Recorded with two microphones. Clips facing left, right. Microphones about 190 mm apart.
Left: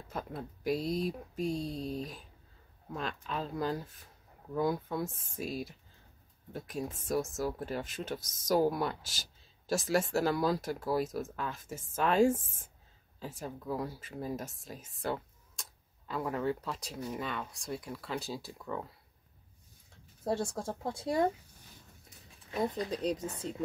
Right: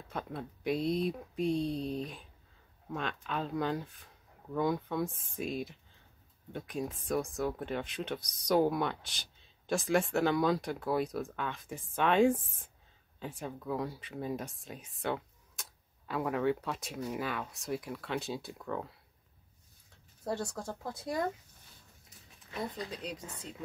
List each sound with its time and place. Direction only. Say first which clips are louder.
0.1 s speech: even; 5° left (ahead or behind)
20.2 s speech: left 3 dB; 25° left (ahead or behind)
22.5 s speech: left 6 dB; 35° left (ahead or behind)